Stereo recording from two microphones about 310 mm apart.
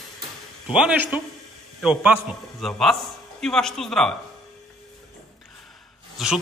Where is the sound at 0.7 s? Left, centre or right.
Centre.